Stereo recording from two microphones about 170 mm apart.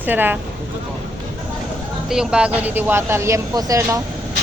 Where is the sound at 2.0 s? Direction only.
5° right (ahead or behind); by 4.0 s 20° right (ahead or behind).